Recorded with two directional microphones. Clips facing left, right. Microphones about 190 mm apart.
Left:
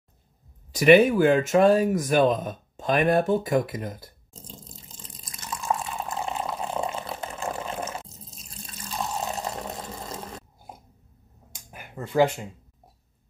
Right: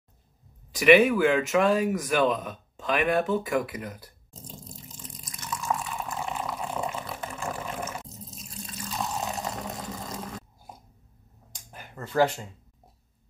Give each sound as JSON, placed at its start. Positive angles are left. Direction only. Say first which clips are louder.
{"t": 0.7, "sound": "speech", "louder": "left 2 dB", "side_deg": 35}
{"t": 3.7, "sound": "speech", "louder": "left 3 dB", "side_deg": 25}
{"t": 4.8, "sound": "water", "louder": "right 3 dB", "side_deg": 25}
{"t": 11.7, "sound": "speech", "louder": "left 3 dB", "side_deg": 10}